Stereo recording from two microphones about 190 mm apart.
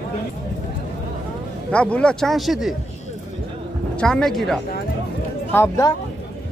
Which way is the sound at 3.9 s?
5° left (ahead or behind).